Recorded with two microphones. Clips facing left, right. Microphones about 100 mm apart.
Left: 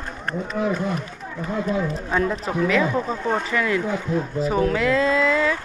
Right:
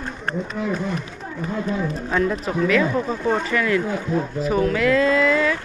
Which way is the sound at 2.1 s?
20° left (ahead or behind).